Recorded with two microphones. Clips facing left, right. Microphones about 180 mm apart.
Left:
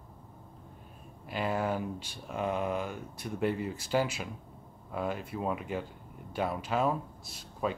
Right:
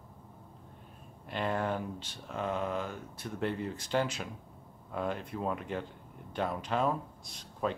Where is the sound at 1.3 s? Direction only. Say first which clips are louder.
Left 1 dB; 5° left (ahead or behind).